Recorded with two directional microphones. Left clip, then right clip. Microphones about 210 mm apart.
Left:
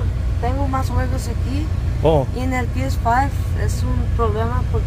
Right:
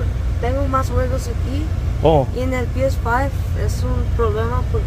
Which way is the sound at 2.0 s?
5° right (ahead or behind).